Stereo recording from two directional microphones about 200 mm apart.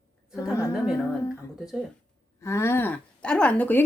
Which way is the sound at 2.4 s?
15° left (ahead or behind).